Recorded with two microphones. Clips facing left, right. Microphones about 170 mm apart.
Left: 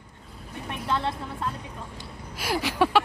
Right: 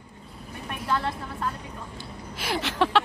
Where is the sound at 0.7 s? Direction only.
25° left (ahead or behind).